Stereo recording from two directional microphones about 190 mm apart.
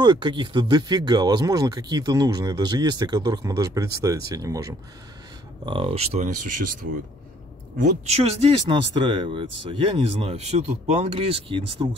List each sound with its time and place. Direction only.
0.0 s speech: 25° right (ahead or behind)
5.7 s speech: 30° right (ahead or behind)